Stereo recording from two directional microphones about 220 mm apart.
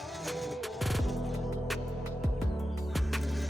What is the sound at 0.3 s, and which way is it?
Music, centre (ahead or behind).